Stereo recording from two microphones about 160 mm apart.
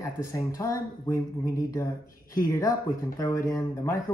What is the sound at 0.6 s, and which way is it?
Speech, 20° left (ahead or behind).